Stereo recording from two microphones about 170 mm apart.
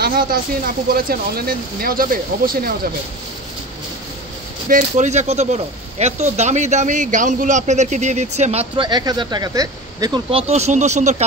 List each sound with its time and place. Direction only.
0.0 s speech: 60° right (ahead or behind)
4.6 s speech: 50° right (ahead or behind); by 10.4 s 25° right (ahead or behind)
10.5 s speech: 40° right (ahead or behind)